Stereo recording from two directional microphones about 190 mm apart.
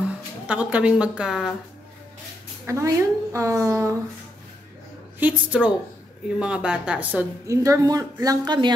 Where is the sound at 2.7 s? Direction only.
15° right (ahead or behind).